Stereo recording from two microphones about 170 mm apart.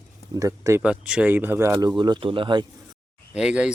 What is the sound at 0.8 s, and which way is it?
Speech, 5° right (ahead or behind).